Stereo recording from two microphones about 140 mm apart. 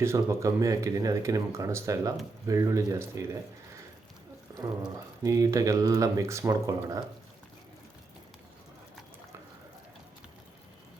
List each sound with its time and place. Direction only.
0.0 s speech: 20° right (ahead or behind)
4.5 s speech: 25° right (ahead or behind)